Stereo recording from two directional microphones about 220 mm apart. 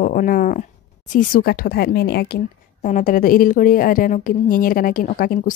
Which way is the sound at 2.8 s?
35° left (ahead or behind).